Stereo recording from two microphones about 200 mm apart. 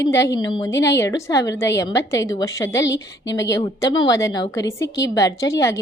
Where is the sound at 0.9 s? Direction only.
15° left (ahead or behind).